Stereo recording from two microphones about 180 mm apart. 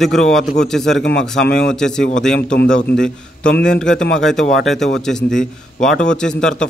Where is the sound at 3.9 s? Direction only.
90° left.